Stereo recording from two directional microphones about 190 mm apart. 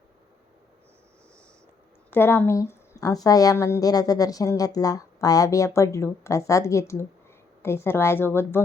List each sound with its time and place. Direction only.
2.0 s a woman's voice: 10° left (ahead or behind)